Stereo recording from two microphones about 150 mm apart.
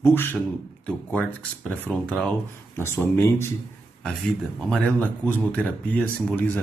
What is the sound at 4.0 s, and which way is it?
Speech, 5° left (ahead or behind).